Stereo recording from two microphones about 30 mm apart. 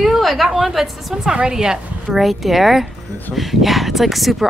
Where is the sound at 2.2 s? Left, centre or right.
Centre.